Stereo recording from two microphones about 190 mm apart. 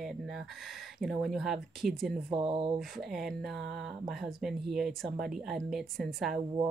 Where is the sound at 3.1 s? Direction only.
Centre (ahead or behind).